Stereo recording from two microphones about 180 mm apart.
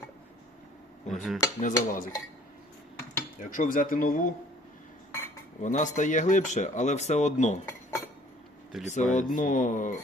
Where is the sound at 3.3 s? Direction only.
45° left (ahead or behind).